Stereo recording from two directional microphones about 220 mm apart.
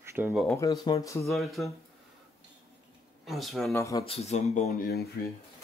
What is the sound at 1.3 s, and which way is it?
Speech, centre (ahead or behind).